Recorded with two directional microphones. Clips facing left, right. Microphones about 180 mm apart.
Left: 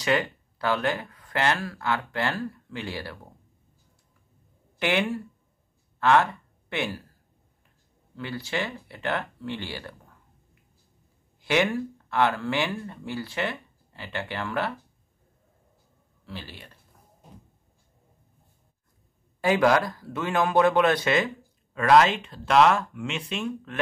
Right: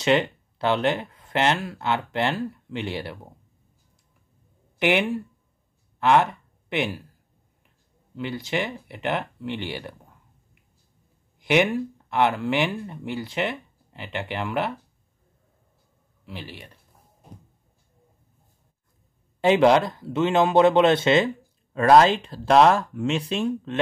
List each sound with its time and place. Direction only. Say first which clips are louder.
0.0 s speech: right 4 dB; 25° right (ahead or behind)
4.7 s speech: right 3 dB; 15° right (ahead or behind)
8.2 s speech: right 3 dB; 20° right (ahead or behind)
11.3 s speech: right 3 dB; 20° right (ahead or behind)
16.3 s speech: right 2 dB; 15° right (ahead or behind)
19.4 s speech: right 4 dB; 25° right (ahead or behind)